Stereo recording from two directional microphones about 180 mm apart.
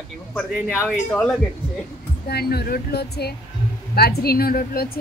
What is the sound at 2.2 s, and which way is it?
A woman's voice, 60° left (ahead or behind).